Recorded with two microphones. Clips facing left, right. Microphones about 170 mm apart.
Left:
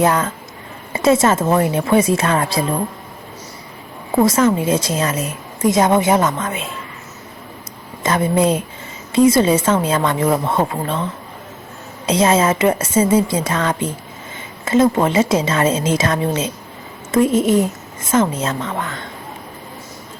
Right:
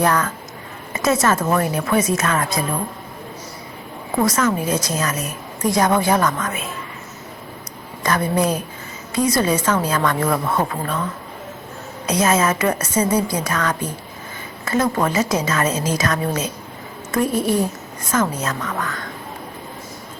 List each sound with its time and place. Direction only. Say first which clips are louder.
0.0 s a woman's voice: left 3 dB; 25° left (ahead or behind)
4.2 s a woman's voice: left 5 dB; 25° left (ahead or behind)
8.0 s a woman's voice: left 3 dB; 25° left (ahead or behind)